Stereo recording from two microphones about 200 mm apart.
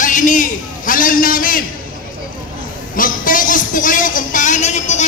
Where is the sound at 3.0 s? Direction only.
45° left (ahead or behind).